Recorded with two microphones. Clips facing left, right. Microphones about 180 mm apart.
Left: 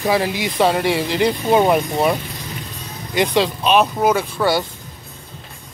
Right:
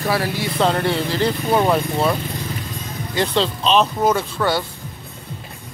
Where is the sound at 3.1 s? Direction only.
15° left (ahead or behind).